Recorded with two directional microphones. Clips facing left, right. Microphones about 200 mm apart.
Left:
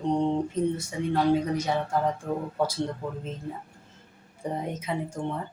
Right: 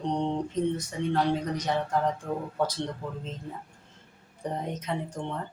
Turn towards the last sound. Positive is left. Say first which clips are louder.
# left 2 dB
turn(degrees=5)  # may be behind; listen again after turning